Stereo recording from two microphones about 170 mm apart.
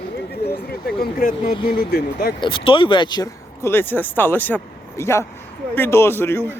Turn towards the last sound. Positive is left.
turn(degrees=15)  # may be behind; listen again after turning